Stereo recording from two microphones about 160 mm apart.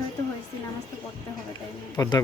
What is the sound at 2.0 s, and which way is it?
Speech, 25° left (ahead or behind).